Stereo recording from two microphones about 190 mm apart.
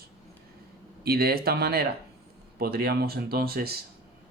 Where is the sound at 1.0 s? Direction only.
55° right (ahead or behind).